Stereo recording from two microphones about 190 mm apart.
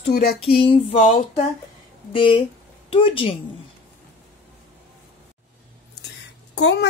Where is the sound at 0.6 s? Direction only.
30° left (ahead or behind).